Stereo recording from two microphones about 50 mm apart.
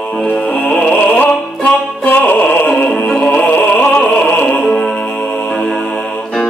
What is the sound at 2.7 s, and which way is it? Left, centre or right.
Music, left.